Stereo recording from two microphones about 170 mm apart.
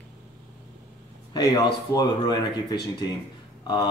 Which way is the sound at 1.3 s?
25° left (ahead or behind).